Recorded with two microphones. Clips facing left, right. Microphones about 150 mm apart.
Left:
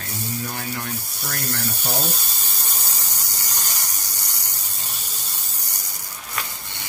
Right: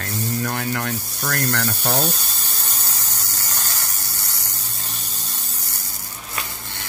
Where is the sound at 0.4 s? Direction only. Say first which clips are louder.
Right 6 dB; 65° right (ahead or behind).